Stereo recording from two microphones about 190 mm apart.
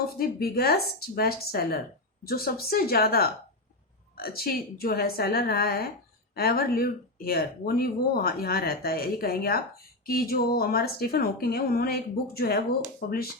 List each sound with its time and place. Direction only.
0.2 s speech: 55° left (ahead or behind)